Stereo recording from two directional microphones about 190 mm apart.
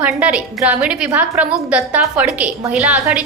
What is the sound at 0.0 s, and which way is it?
A woman's voice, 5° right (ahead or behind).